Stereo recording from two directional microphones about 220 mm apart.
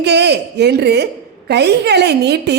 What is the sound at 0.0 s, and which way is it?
A woman's voice, 50° right (ahead or behind).